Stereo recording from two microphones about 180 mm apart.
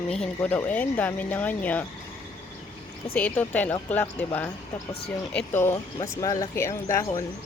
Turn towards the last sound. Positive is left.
turn(degrees=15)  # may be behind; listen again after turning